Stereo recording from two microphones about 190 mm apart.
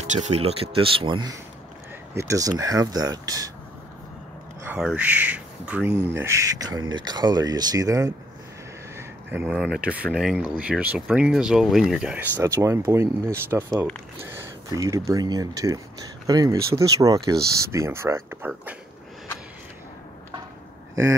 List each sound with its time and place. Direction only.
0.0 s speech: 40° right (ahead or behind); by 3.5 s 20° right (ahead or behind)
4.6 s speech: 5° right (ahead or behind)